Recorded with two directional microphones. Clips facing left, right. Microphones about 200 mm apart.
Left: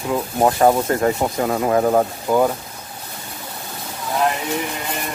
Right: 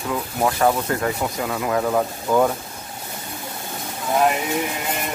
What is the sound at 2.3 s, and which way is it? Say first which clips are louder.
Speech: left 1 dB; 10° left (ahead or behind).